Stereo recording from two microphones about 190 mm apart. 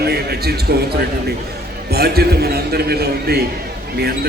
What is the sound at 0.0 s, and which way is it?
Speech, 55° right (ahead or behind).